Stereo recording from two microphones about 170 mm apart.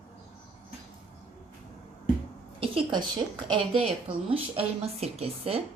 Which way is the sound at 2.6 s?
30° right (ahead or behind).